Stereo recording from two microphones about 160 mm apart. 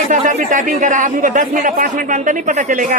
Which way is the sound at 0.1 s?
50° right (ahead or behind).